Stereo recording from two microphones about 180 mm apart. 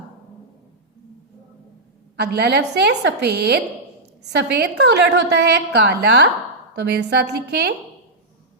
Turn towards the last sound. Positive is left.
turn(degrees=-65)  # may be behind; listen again after turning